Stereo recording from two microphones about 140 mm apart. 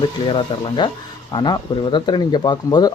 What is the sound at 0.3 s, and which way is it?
Speech, 35° left (ahead or behind).